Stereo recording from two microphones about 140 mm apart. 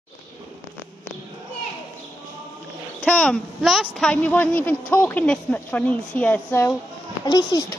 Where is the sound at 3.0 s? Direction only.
10° left (ahead or behind).